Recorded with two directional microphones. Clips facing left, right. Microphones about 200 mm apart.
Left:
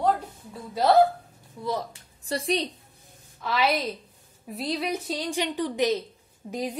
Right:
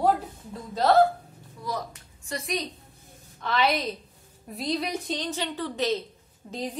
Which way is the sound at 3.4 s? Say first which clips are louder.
Even; 5° left (ahead or behind).